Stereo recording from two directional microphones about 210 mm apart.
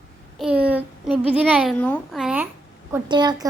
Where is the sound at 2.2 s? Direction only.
5° right (ahead or behind).